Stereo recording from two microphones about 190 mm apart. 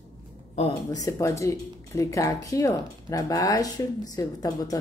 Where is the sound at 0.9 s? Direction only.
15° left (ahead or behind).